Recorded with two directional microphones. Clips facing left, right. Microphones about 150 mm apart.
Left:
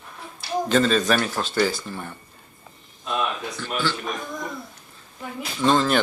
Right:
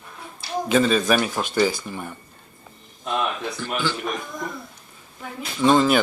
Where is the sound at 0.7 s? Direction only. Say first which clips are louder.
Right 1 dB; 5° right (ahead or behind).